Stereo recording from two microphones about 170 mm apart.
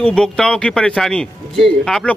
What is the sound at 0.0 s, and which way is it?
Speech, 5° left (ahead or behind).